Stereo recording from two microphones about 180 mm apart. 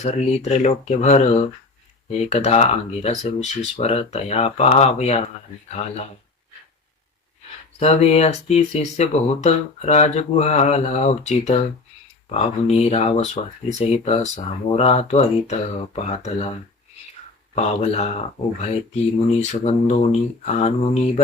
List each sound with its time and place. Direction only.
0.0 s speech: 40° left (ahead or behind)
7.8 s speech: 35° left (ahead or behind)
17.5 s speech: 35° left (ahead or behind)
19.4 s speech: 40° left (ahead or behind)